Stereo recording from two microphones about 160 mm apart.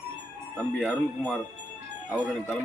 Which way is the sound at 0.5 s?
10° left (ahead or behind).